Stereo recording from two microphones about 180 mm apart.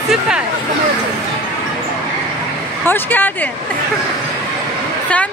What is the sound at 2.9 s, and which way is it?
Speech, 10° left (ahead or behind).